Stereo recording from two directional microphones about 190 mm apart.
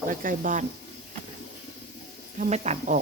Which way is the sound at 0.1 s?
45° right (ahead or behind).